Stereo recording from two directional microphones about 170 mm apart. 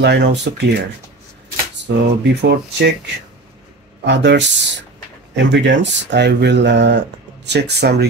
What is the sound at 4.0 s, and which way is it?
Speech, 90° right.